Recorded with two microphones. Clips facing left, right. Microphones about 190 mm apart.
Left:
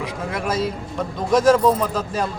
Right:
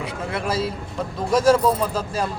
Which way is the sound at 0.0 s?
30° right (ahead or behind).